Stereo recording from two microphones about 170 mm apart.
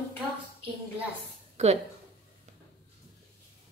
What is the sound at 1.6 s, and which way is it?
Speech, 40° right (ahead or behind).